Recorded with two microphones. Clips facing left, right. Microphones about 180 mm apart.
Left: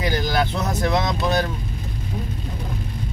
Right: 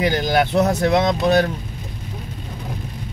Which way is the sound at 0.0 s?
20° right (ahead or behind).